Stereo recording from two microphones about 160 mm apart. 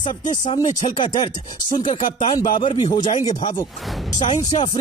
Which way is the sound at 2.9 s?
55° left (ahead or behind).